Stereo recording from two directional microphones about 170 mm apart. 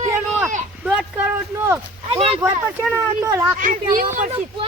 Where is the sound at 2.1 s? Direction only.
35° right (ahead or behind).